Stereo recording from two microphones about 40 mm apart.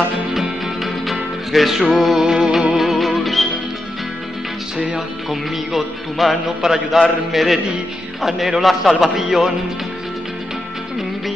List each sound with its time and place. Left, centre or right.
0.3 s music: centre
2.2 s music: centre
2.8 s music: centre
4.7 s music: centre
5.3 s music: centre
8.2 s a man's voice: centre